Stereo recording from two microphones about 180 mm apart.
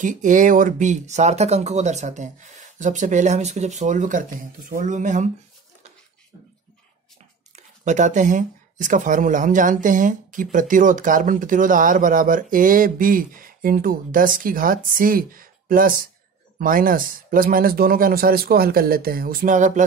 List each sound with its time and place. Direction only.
0.0 s speech: 45° right (ahead or behind)
7.5 s speech: 40° right (ahead or behind)